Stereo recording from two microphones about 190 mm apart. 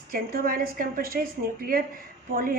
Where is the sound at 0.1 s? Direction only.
50° right (ahead or behind).